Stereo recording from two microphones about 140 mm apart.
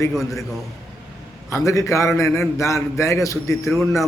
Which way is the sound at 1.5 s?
20° left (ahead or behind).